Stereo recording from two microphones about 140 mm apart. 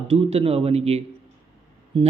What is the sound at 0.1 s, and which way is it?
A man's voice, 45° right (ahead or behind).